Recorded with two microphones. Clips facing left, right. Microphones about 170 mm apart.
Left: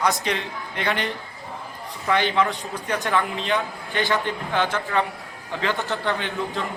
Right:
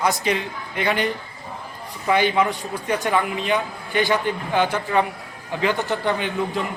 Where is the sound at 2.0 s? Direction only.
20° right (ahead or behind).